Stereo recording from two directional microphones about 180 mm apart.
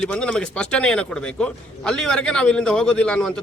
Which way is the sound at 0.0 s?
5° left (ahead or behind).